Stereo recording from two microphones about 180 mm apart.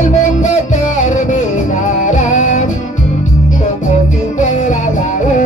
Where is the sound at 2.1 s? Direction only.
45° left (ahead or behind).